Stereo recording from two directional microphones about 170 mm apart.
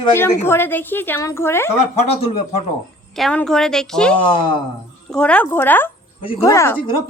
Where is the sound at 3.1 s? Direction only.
5° left (ahead or behind).